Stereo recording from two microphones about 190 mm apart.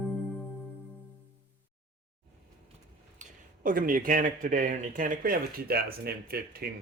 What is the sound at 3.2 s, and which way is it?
Speech, 45° right (ahead or behind).